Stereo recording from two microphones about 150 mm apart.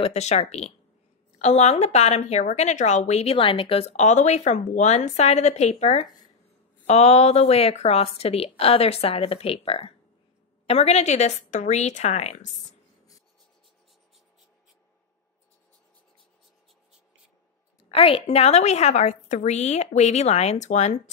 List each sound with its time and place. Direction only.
0.0 s a woman's voice: 45° left (ahead or behind)
17.9 s a woman's voice: 40° left (ahead or behind)